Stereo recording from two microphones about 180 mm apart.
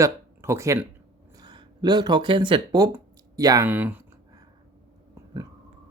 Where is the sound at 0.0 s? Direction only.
15° right (ahead or behind).